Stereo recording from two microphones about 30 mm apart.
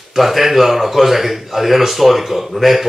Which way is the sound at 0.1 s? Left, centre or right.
Centre.